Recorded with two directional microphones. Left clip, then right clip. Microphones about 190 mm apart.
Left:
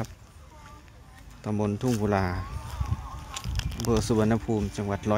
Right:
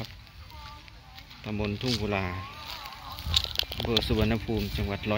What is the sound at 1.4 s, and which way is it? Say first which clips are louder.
Speech: left 3 dB; 25° left (ahead or behind).